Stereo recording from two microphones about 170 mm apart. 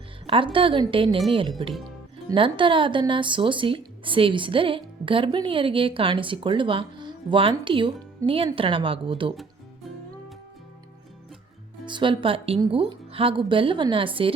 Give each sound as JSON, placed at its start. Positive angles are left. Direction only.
{"t": 0.3, "sound": "a woman's voice", "side_deg": -30}
{"t": 8.5, "sound": "a woman's voice", "side_deg": -30}
{"t": 11.9, "sound": "a woman's voice", "side_deg": -30}